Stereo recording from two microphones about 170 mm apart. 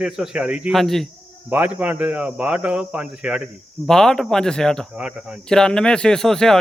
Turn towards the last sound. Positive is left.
turn(degrees=5)  # may be behind; listen again after turning